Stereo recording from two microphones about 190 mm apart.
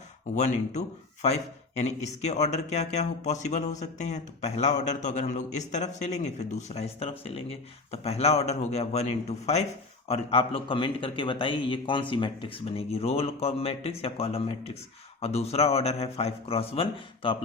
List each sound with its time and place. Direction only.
0.3 s a man's voice: 40° left (ahead or behind)